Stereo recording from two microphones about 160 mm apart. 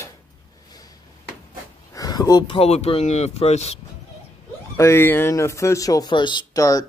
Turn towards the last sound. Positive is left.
turn(degrees=20)  # may be behind; listen again after turning